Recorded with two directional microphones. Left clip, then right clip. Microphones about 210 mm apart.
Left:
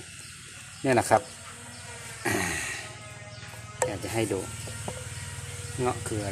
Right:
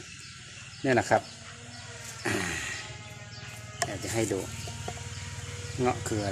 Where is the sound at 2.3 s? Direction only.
15° left (ahead or behind).